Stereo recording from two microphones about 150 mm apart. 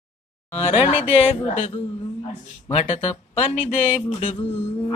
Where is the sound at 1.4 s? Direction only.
45° left (ahead or behind).